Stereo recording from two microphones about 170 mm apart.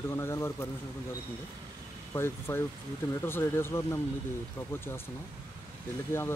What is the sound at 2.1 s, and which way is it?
Speech, 15° left (ahead or behind).